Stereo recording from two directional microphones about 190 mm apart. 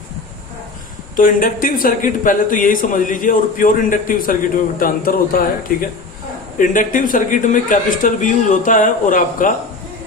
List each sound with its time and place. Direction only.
1.1 s speech: 45° left (ahead or behind)